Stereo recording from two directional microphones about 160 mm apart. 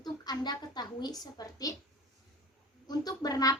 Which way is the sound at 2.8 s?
25° left (ahead or behind).